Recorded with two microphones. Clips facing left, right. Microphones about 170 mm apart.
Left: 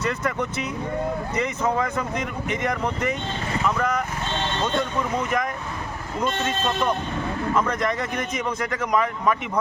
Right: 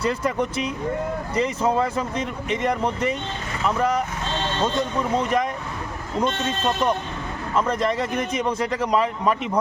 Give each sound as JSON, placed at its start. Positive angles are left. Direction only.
{"t": 0.0, "sound": "speech", "side_deg": -30}
{"t": 5.1, "sound": "speech", "side_deg": -30}
{"t": 7.5, "sound": "speech", "side_deg": -30}